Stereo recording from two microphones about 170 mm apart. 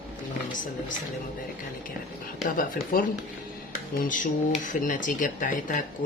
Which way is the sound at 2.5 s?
55° left (ahead or behind).